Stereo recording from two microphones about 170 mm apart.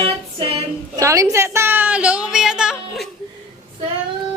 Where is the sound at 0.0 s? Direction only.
35° right (ahead or behind).